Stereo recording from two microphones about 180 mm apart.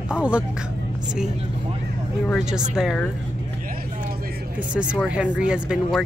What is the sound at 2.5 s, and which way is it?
Speech, 5° right (ahead or behind).